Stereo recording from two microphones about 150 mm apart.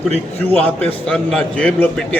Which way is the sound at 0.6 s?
10° left (ahead or behind).